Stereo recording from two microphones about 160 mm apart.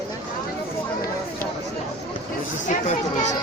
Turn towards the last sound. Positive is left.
turn(degrees=45)  # may be behind; listen again after turning